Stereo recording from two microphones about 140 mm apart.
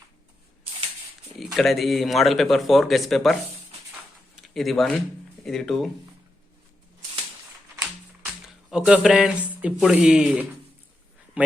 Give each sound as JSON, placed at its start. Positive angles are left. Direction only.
{"t": 1.4, "sound": "speech", "side_deg": 0}
{"t": 3.9, "sound": "a sound", "side_deg": 0}
{"t": 5.5, "sound": "speech", "side_deg": 0}
{"t": 8.7, "sound": "a man's voice", "side_deg": -5}